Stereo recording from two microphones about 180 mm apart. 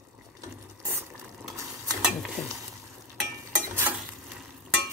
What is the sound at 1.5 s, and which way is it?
Mechanisms, 15° right (ahead or behind).